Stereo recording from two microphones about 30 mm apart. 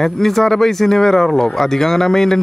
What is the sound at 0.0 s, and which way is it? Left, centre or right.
Speech, centre.